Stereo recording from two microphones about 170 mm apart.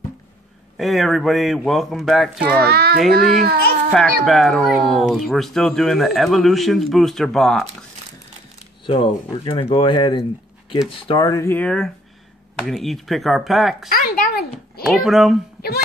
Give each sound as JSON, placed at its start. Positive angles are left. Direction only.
{"t": 0.7, "sound": "speech", "side_deg": 0}
{"t": 2.7, "sound": "a child's voice", "side_deg": -70}
{"t": 3.9, "sound": "speech", "side_deg": 0}
{"t": 8.8, "sound": "speech", "side_deg": 30}
{"t": 13.8, "sound": "speech", "side_deg": 60}
{"t": 14.9, "sound": "speech", "side_deg": 0}